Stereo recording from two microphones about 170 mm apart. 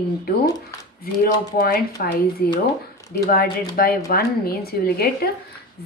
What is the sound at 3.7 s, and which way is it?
Speech, 60° left (ahead or behind).